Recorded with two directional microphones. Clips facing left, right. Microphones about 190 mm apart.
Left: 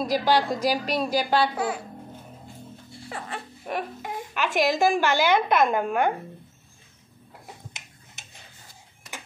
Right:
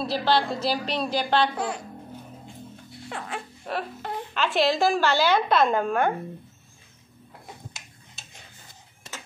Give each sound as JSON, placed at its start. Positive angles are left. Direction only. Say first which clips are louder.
{"t": 0.0, "sound": "a woman's voice", "louder": "left 1 dB", "side_deg": 10}
{"t": 3.1, "sound": "speech", "louder": "right 1 dB", "side_deg": 0}
{"t": 3.6, "sound": "a child's voice", "louder": "left 1 dB", "side_deg": 15}
{"t": 8.2, "sound": "tick-tock", "louder": "right 1 dB", "side_deg": 20}